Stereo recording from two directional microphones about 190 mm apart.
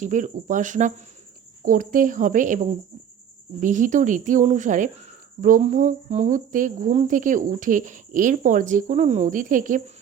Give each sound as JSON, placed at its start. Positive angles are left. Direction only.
{"t": 0.0, "sound": "a woman's voice", "side_deg": -40}
{"t": 3.6, "sound": "a woman's voice", "side_deg": -40}